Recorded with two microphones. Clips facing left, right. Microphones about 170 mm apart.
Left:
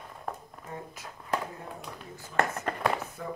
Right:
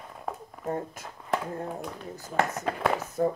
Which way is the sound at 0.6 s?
50° right (ahead or behind).